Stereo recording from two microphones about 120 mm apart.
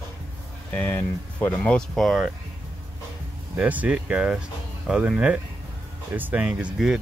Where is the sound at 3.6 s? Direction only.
10° right (ahead or behind).